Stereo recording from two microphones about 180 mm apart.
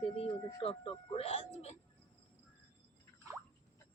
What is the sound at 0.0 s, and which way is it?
Speech, 30° left (ahead or behind).